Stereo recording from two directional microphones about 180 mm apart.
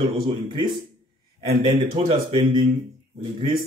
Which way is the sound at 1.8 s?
35° right (ahead or behind).